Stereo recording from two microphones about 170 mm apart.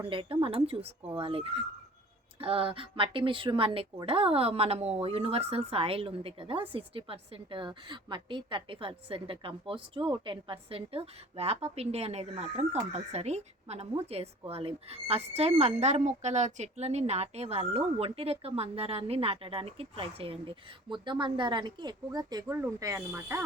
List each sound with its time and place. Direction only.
0.1 s a woman's voice: 30° right (ahead or behind); by 23.4 s 15° right (ahead or behind)